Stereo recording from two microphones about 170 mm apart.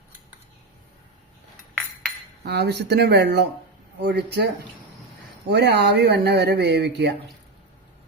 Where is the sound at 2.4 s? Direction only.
75° right (ahead or behind).